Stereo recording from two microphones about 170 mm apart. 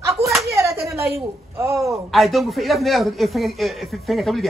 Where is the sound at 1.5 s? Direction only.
15° right (ahead or behind).